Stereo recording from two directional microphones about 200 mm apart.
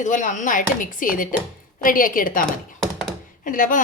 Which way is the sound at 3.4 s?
40° left (ahead or behind).